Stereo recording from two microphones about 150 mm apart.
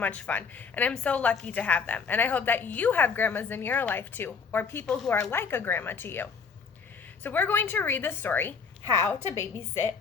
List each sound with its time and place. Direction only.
0.0 s a woman's voice: 10° left (ahead or behind)